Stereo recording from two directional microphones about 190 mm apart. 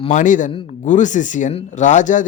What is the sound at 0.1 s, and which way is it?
Speech, 40° left (ahead or behind).